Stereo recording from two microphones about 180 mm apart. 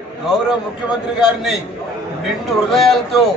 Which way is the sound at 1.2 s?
Centre (ahead or behind).